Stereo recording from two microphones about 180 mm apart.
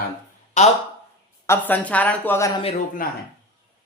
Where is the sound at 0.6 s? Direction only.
40° left (ahead or behind).